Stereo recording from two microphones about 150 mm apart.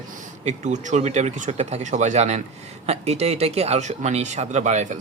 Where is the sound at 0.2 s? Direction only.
50° right (ahead or behind).